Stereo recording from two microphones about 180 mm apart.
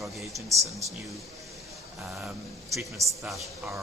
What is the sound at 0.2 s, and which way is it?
Speech, centre (ahead or behind).